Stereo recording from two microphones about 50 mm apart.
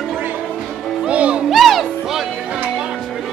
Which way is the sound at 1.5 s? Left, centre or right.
Centre.